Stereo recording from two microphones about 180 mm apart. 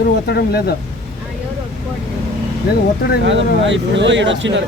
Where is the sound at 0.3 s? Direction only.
65° left (ahead or behind).